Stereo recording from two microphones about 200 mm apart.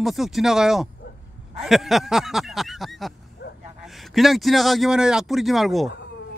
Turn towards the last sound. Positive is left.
turn(degrees=0)  # may be behind; listen again after turning